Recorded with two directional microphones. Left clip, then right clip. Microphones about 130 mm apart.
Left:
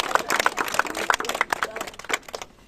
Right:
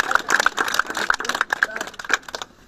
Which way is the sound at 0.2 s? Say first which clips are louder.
Right 1 dB; 25° left (ahead or behind).